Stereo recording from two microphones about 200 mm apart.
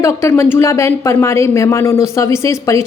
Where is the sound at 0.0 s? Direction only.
15° left (ahead or behind).